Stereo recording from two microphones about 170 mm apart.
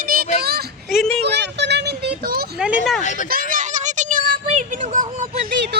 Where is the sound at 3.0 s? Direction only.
45° left (ahead or behind).